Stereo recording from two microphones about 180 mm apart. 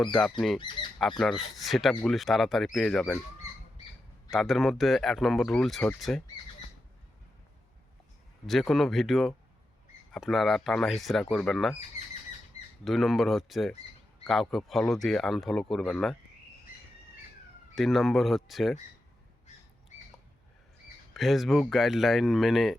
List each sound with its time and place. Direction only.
0.0 s speech: 5° left (ahead or behind)
0.8 s speech: 25° left (ahead or behind)
1.2 s speech: centre (ahead or behind)
4.3 s speech: centre (ahead or behind)
8.4 s speech: centre (ahead or behind)
12.8 s speech: centre (ahead or behind)
17.7 s speech: centre (ahead or behind)
21.1 s speech: centre (ahead or behind)